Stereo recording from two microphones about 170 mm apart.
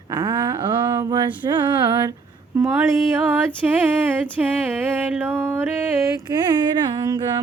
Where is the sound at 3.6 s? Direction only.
5° right (ahead or behind).